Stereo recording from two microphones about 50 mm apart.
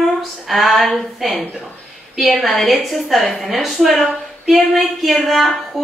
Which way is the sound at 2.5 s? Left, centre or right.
Centre.